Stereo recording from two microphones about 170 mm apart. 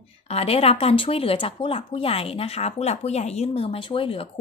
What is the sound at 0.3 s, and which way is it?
A woman's voice, 35° left (ahead or behind).